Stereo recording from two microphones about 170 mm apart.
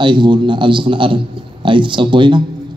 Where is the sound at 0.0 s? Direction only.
25° right (ahead or behind).